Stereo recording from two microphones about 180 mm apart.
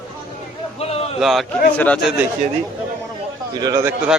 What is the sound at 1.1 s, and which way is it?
Speech, centre (ahead or behind).